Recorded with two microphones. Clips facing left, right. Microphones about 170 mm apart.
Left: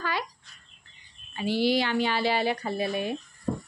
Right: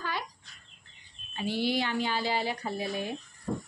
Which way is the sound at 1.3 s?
90° left.